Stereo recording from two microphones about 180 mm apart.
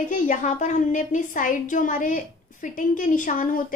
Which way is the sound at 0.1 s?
45° left (ahead or behind).